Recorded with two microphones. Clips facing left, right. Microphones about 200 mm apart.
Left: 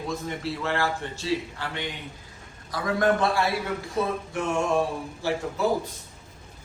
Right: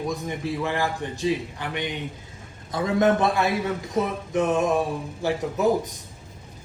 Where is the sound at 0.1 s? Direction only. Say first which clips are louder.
Right 2 dB; 15° right (ahead or behind).